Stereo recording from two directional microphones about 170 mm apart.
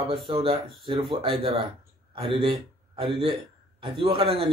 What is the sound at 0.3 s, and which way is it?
A man's voice, 30° right (ahead or behind).